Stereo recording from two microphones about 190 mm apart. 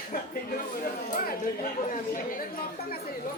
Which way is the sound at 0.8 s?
45° left (ahead or behind).